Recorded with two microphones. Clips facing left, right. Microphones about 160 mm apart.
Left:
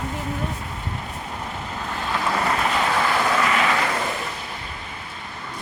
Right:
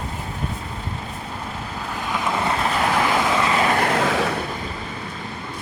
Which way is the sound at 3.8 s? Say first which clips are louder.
Right 5 dB; 80° right.